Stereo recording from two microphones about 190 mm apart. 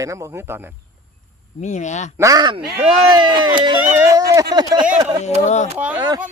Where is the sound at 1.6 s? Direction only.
40° left (ahead or behind).